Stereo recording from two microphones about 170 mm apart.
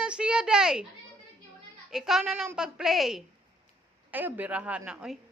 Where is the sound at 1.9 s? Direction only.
Centre (ahead or behind).